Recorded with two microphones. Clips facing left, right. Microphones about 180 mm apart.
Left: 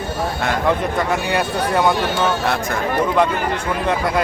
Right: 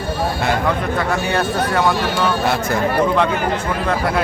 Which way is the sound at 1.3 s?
15° left (ahead or behind).